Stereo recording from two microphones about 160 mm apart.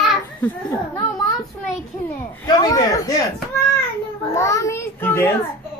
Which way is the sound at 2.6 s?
20° left (ahead or behind).